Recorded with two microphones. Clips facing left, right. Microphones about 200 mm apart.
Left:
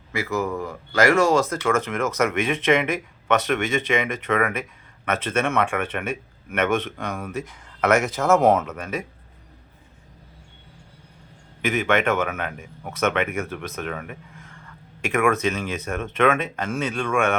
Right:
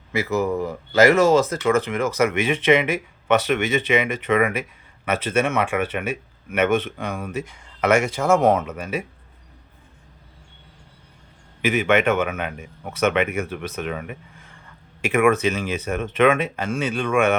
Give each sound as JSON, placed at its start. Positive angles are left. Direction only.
{"t": 0.2, "sound": "speech", "side_deg": -20}
{"t": 1.0, "sound": "speech", "side_deg": -5}
{"t": 11.6, "sound": "speech", "side_deg": -5}